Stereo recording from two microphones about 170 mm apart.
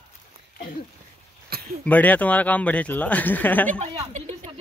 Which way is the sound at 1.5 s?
65° right (ahead or behind).